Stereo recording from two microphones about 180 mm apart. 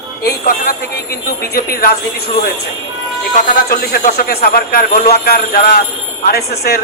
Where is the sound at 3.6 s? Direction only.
55° left (ahead or behind).